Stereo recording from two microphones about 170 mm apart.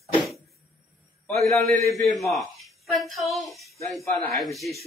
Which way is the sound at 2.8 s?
Centre (ahead or behind).